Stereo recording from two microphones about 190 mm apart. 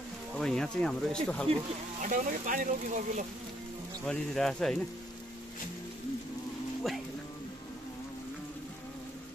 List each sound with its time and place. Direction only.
0.4 s speech: 5° left (ahead or behind)
2.0 s speech: 45° right (ahead or behind)
4.0 s speech: 5° left (ahead or behind)